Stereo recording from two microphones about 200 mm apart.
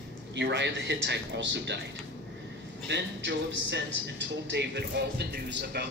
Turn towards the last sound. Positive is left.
turn(degrees=-55)  # may be behind; listen again after turning